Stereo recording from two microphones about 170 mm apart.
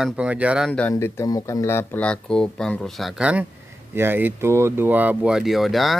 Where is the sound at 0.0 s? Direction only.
5° right (ahead or behind).